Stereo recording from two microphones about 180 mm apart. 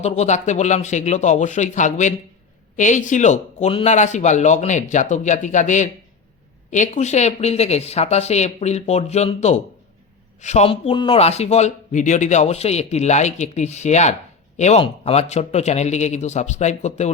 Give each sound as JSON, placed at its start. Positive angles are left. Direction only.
{"t": 0.0, "sound": "a man's voice", "side_deg": 40}